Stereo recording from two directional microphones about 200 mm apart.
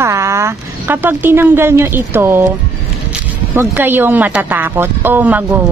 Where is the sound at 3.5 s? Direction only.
10° right (ahead or behind).